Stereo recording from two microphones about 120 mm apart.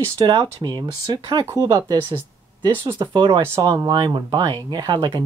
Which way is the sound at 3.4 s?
20° right (ahead or behind).